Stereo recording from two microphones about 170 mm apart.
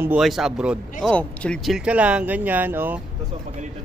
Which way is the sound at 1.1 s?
5° left (ahead or behind).